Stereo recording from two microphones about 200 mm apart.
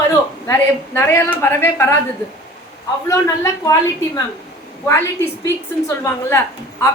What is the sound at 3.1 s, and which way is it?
Speech, 15° left (ahead or behind).